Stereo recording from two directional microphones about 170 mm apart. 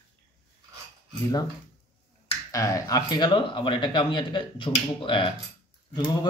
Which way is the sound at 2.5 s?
20° left (ahead or behind).